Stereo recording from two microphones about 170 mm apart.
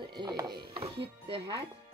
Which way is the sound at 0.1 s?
25° right (ahead or behind).